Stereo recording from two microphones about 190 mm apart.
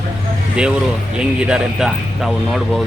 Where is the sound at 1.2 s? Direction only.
5° right (ahead or behind).